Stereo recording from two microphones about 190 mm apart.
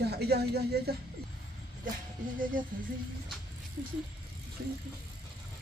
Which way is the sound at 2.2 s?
45° right (ahead or behind).